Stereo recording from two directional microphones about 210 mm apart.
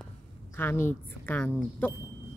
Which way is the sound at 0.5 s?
10° left (ahead or behind).